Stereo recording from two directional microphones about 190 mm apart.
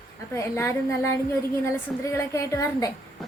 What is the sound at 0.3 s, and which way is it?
A woman's voice, 15° left (ahead or behind).